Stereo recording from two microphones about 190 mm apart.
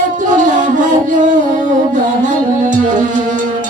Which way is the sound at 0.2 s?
40° right (ahead or behind).